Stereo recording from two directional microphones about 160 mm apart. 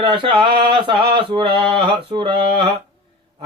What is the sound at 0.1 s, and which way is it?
Mantra, 30° right (ahead or behind).